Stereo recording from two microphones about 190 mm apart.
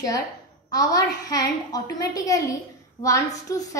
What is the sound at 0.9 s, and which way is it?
A woman's voice, 20° left (ahead or behind).